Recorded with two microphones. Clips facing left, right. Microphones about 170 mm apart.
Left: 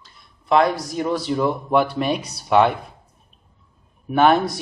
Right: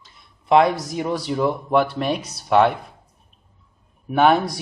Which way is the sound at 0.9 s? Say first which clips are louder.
Left 1 dB; 15° right (ahead or behind).